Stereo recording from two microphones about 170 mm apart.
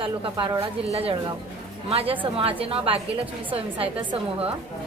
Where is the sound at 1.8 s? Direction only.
35° right (ahead or behind).